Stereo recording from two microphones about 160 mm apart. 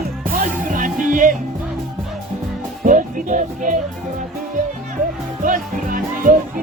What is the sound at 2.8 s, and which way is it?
Music, 55° right (ahead or behind).